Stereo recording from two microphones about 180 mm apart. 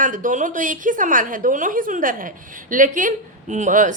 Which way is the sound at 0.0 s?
45° right (ahead or behind).